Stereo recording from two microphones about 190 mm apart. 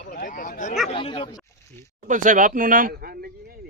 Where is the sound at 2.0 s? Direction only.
40° right (ahead or behind).